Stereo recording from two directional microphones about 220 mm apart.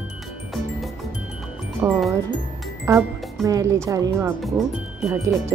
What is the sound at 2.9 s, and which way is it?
Speech, 15° right (ahead or behind).